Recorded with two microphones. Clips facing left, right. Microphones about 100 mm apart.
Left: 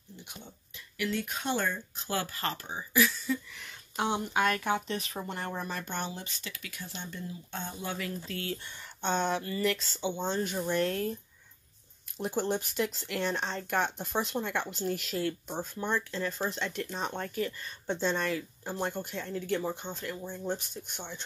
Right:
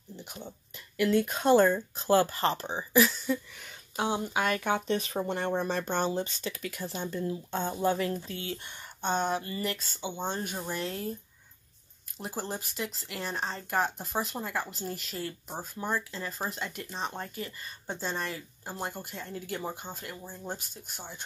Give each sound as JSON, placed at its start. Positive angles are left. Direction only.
{"t": 0.9, "sound": "speech", "side_deg": -45}
{"t": 3.9, "sound": "speech", "side_deg": -10}
{"t": 8.3, "sound": "speech", "side_deg": -20}
{"t": 9.3, "sound": "speech", "side_deg": -35}
{"t": 10.0, "sound": "speech", "side_deg": -15}
{"t": 12.2, "sound": "speech", "side_deg": 0}